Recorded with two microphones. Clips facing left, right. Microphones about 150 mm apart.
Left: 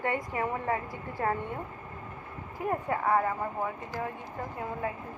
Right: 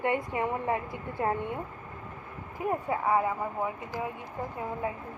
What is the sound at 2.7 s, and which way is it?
Speech, 10° right (ahead or behind).